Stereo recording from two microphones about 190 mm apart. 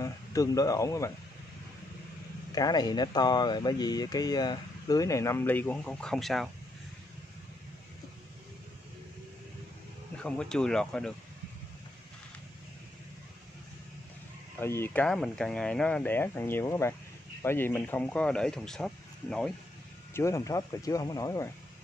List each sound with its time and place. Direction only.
0.0 s speech: 20° left (ahead or behind)
2.5 s speech: 20° left (ahead or behind); by 6.5 s centre (ahead or behind)
10.1 s speech: 5° left (ahead or behind)
14.6 s speech: 10° left (ahead or behind)
20.2 s speech: 15° left (ahead or behind)